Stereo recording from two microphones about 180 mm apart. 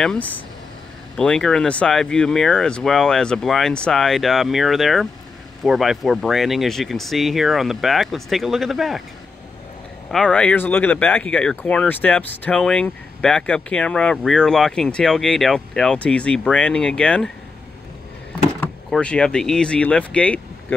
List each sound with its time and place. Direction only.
0.0 s speech: centre (ahead or behind)
10.1 s speech: 5° left (ahead or behind)
18.6 s speech: 5° left (ahead or behind)